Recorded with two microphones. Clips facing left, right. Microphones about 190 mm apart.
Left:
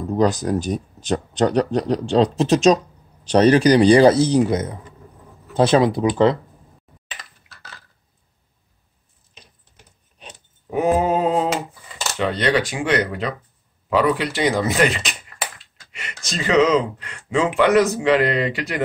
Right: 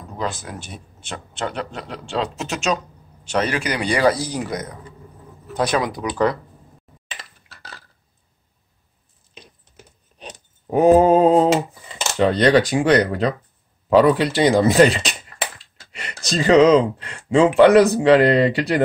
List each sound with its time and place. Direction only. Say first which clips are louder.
0.2 s speech: left 9 dB; 40° left (ahead or behind); by 6.3 s 25° left (ahead or behind)
10.1 s a sound: right 5 dB; 35° right (ahead or behind)
12.2 s speech: right 5 dB; 35° right (ahead or behind)